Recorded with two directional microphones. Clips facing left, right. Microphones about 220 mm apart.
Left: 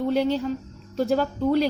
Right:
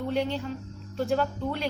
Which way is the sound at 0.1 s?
40° left (ahead or behind).